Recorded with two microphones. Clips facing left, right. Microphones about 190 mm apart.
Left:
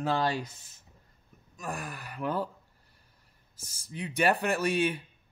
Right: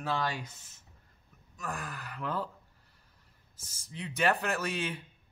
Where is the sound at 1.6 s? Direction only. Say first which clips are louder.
Left 2 dB; 15° left (ahead or behind).